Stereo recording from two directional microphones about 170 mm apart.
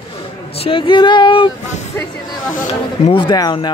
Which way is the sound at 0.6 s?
30° left (ahead or behind).